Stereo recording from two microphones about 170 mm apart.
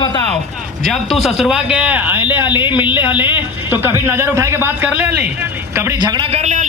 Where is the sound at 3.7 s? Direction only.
15° right (ahead or behind); by 6.7 s 45° right (ahead or behind).